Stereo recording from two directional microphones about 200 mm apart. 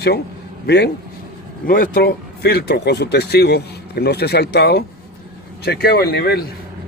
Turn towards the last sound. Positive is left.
turn(degrees=50)  # may be behind; listen again after turning